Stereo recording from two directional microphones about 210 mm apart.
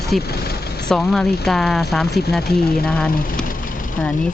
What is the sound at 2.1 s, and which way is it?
Speech, 50° left (ahead or behind).